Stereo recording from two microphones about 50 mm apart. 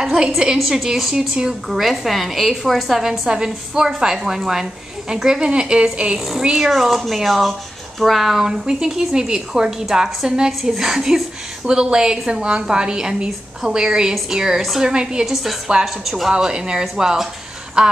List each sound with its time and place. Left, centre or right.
0.0 s a woman's voice: centre
0.6 s a woman's voice: centre
1.7 s a woman's voice: centre; by 6.1 s right
6.1 s a woman's voice: centre
15.8 s a woman's voice: centre